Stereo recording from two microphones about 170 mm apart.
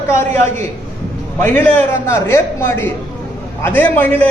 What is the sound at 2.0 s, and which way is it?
A man's voice, 15° left (ahead or behind).